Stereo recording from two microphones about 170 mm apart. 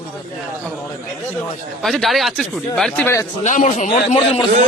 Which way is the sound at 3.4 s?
45° left (ahead or behind).